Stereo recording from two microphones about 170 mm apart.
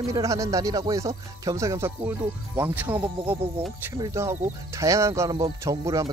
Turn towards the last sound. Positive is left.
turn(degrees=-20)  # may be behind; listen again after turning